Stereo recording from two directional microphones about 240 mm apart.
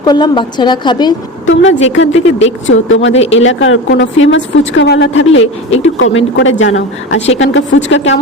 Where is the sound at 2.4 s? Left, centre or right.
Left.